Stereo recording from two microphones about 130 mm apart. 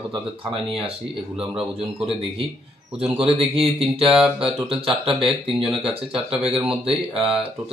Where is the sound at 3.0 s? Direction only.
50° right (ahead or behind).